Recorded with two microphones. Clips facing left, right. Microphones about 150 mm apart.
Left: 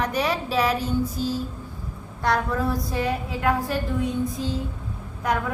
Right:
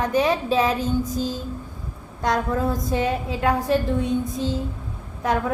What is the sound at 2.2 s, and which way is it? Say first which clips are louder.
A woman's voice: right 1 dB; 20° right (ahead or behind).